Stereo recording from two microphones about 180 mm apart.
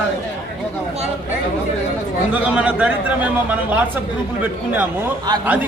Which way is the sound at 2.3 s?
5° right (ahead or behind).